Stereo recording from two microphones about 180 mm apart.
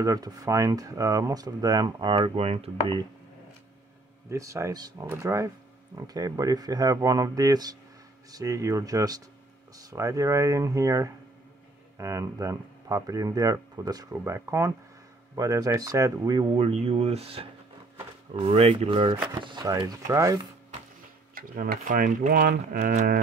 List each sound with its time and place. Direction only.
0.0 s speech: 20° right (ahead or behind)
4.3 s speech: 15° right (ahead or behind)
21.4 s speech: 50° right (ahead or behind)